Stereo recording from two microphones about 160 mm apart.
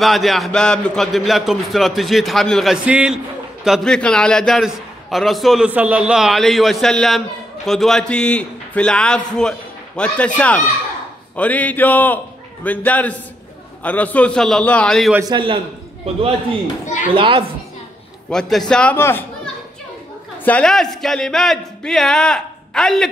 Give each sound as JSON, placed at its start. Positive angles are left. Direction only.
{"t": 0.0, "sound": "a man's voice", "side_deg": 0}
{"t": 15.2, "sound": "a man's voice", "side_deg": -30}
{"t": 16.8, "sound": "speech", "side_deg": 50}
{"t": 17.1, "sound": "a man's voice", "side_deg": -35}
{"t": 18.3, "sound": "a man's voice", "side_deg": 5}
{"t": 20.4, "sound": "a man's voice", "side_deg": 5}